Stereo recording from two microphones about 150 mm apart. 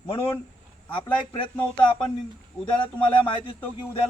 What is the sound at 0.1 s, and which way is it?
Speech, 35° left (ahead or behind).